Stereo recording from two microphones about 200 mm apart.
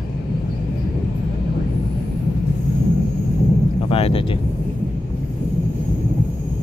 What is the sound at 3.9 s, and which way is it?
Speech, 30° left (ahead or behind).